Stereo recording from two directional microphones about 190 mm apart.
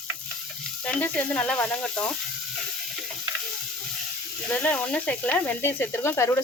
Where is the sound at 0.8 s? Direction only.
5° left (ahead or behind).